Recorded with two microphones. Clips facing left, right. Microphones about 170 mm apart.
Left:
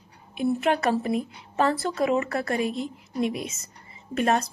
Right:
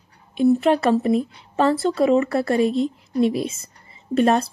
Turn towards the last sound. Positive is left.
turn(degrees=-30)  # may be behind; listen again after turning